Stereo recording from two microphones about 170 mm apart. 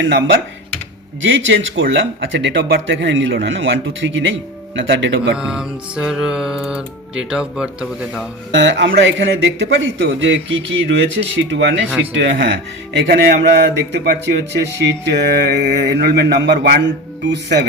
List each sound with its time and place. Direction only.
0.0 s speech: 90° right
5.4 s music: 5° right (ahead or behind)
8.5 s speech: 90° right
13.0 s speech: 70° right (ahead or behind)